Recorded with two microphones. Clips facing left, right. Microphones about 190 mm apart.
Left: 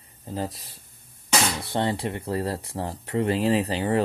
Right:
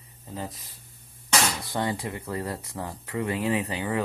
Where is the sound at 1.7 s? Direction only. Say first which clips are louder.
Left 3 dB; 25° left (ahead or behind).